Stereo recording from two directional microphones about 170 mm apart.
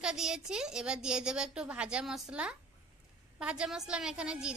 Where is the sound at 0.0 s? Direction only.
5° right (ahead or behind).